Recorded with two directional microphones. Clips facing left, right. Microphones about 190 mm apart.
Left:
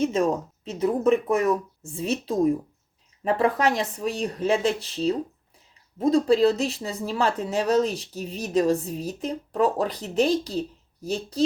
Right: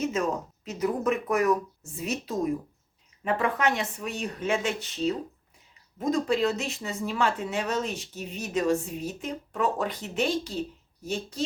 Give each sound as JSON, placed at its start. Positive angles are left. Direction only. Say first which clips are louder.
{"t": 0.0, "sound": "speech", "louder": "left 5 dB", "side_deg": 30}